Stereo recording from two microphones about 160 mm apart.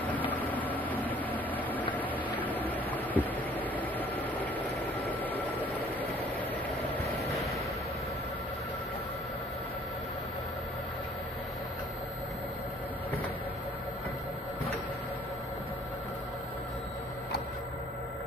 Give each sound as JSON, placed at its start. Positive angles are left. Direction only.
{"t": 0.3, "sound": "vehicle", "side_deg": 10}
{"t": 2.4, "sound": "train", "side_deg": 10}
{"t": 5.2, "sound": "vehicle", "side_deg": 10}